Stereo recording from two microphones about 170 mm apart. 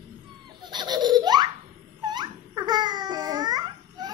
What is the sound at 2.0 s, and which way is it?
Babbling, 25° right (ahead or behind).